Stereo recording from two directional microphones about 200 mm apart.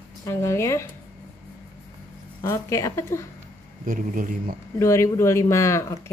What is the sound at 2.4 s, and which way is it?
Speech, 15° left (ahead or behind).